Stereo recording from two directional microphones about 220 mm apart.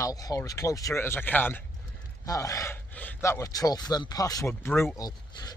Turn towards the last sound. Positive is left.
turn(degrees=15)  # may be behind; listen again after turning